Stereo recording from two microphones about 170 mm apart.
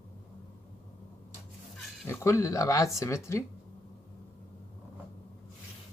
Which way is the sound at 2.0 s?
15° left (ahead or behind).